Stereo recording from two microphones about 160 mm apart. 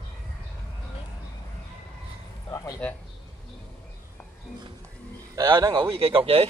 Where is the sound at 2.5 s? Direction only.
20° left (ahead or behind).